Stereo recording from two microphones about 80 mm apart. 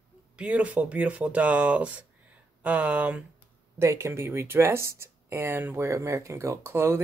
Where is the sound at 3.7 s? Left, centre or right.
Right.